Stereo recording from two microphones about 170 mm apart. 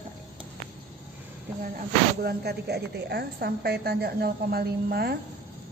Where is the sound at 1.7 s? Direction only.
65° right (ahead or behind).